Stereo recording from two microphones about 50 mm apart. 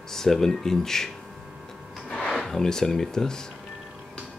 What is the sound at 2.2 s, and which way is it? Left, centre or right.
Speech, centre.